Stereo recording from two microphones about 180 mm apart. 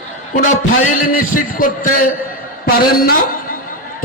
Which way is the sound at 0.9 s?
50° left (ahead or behind).